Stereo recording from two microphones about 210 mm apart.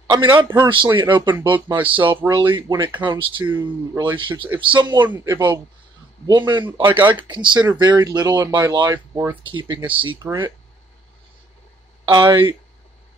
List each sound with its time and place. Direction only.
0.1 s speech: 20° right (ahead or behind)
5.0 s speech: 10° right (ahead or behind)
6.2 s speech: 20° right (ahead or behind)
12.1 s speech: 20° right (ahead or behind)